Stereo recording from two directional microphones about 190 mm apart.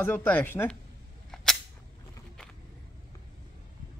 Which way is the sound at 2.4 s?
5° left (ahead or behind).